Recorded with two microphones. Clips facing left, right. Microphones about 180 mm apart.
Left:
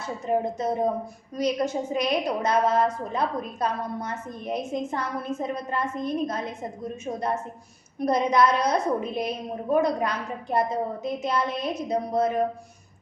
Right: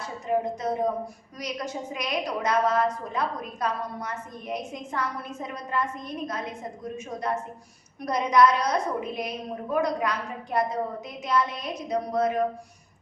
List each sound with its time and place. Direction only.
0.3 s a woman's voice: 35° left (ahead or behind)